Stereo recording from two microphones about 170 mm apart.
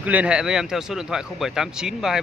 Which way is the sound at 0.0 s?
10° right (ahead or behind).